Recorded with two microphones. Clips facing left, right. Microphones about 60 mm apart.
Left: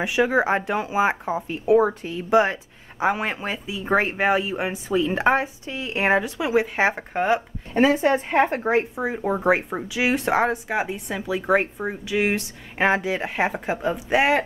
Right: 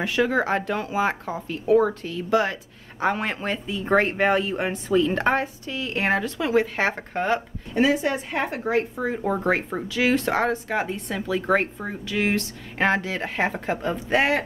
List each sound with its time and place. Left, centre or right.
0.0 s speech: centre
3.0 s speech: centre
7.7 s speech: left; by 14.4 s centre